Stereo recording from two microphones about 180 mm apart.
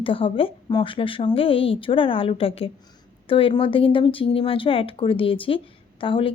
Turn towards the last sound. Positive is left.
turn(degrees=30)  # may be behind; listen again after turning